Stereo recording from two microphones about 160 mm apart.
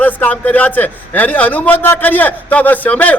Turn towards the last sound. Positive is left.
turn(degrees=10)  # may be behind; listen again after turning